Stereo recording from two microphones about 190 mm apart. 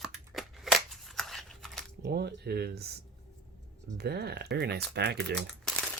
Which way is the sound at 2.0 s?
60° right (ahead or behind).